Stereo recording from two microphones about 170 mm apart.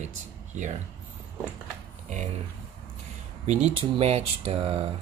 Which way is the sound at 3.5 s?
35° right (ahead or behind).